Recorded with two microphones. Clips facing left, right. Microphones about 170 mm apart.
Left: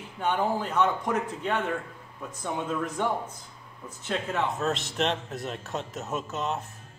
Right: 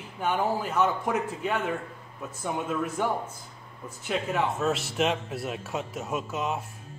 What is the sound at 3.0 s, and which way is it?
A man's voice, 5° right (ahead or behind).